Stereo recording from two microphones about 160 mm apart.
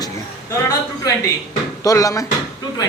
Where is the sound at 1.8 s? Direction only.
20° left (ahead or behind).